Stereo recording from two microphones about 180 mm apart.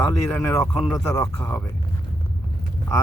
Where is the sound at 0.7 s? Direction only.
Centre (ahead or behind).